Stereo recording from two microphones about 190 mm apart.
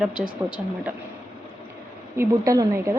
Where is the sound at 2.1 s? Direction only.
15° right (ahead or behind).